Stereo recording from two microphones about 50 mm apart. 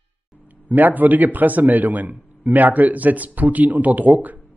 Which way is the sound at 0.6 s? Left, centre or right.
Right.